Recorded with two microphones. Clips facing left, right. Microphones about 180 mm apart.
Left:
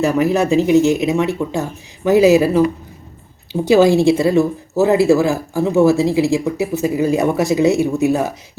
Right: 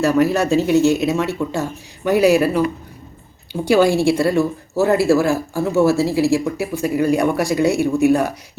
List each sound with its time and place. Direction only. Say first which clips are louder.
0.0 s speech: left 1 dB; 20° left (ahead or behind)
3.7 s speech: left 3 dB; 20° left (ahead or behind)